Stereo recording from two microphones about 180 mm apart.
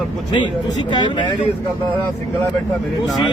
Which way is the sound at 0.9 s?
25° left (ahead or behind).